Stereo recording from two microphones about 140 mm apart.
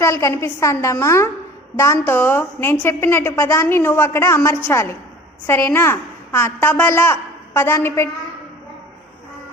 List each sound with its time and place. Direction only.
0.0 s a woman's voice: 20° left (ahead or behind)